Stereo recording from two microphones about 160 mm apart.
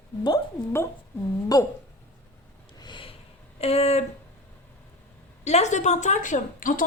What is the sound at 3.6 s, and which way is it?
Speech, 40° left (ahead or behind).